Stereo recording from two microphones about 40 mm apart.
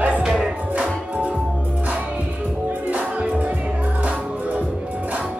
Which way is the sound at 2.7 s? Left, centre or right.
Right.